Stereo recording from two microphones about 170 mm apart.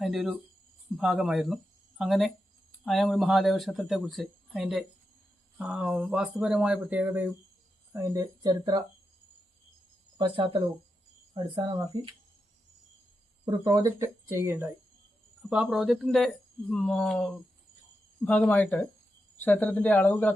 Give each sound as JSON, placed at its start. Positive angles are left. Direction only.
{"t": 0.0, "sound": "speech", "side_deg": 0}
{"t": 10.2, "sound": "speech", "side_deg": -30}
{"t": 13.4, "sound": "speech", "side_deg": -25}
{"t": 15.4, "sound": "speech", "side_deg": -5}